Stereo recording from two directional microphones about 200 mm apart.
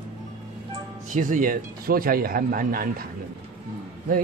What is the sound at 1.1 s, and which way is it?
Speech, 40° right (ahead or behind).